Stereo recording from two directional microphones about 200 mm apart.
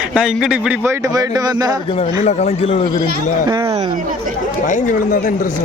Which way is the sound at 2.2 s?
30° left (ahead or behind).